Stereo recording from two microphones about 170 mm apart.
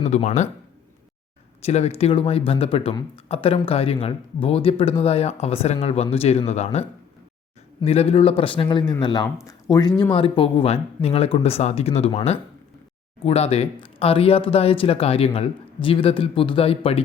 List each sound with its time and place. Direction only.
0.0 s speech: 40° left (ahead or behind)
1.6 s speech: 40° left (ahead or behind)